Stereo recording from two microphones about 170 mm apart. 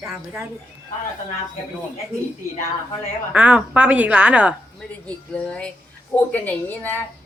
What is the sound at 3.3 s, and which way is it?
A woman's voice, 10° right (ahead or behind).